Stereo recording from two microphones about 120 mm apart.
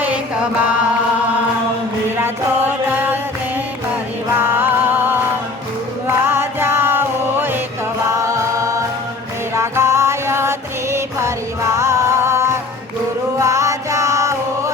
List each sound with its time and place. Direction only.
2.1 s music: 20° right (ahead or behind)
4.4 s music: 15° right (ahead or behind)
8.1 s a capella: 25° right (ahead or behind)
9.6 s music: 25° right (ahead or behind)